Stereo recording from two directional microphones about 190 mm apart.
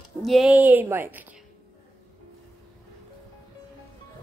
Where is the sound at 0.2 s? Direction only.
Centre (ahead or behind).